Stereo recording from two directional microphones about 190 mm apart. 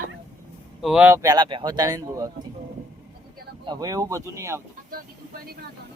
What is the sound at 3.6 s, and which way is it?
Speech, 20° right (ahead or behind).